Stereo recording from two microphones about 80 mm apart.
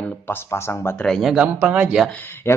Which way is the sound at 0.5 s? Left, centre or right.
Left.